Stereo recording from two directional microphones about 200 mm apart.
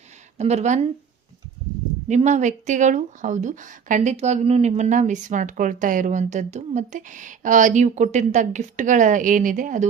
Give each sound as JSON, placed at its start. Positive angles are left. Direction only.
{"t": 0.3, "sound": "speech", "side_deg": -35}
{"t": 2.0, "sound": "speech", "side_deg": -35}